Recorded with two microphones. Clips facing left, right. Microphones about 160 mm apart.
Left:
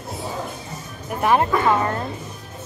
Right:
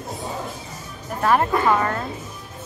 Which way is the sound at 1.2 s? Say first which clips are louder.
Left 1 dB; 20° left (ahead or behind).